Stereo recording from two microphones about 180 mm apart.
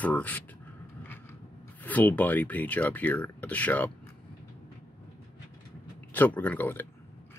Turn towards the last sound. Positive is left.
turn(degrees=10)  # may be behind; listen again after turning